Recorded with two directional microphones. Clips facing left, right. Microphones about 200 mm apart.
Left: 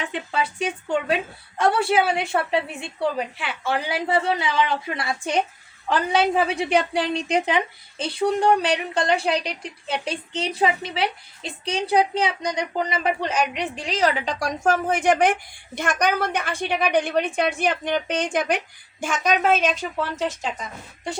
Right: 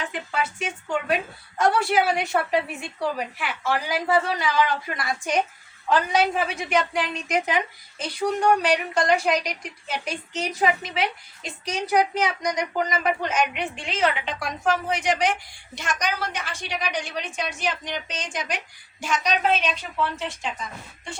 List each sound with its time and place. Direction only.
0.1 s a woman's voice: 30° left (ahead or behind)